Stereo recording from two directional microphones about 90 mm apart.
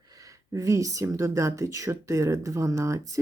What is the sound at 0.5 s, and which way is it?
Speech, 35° right (ahead or behind).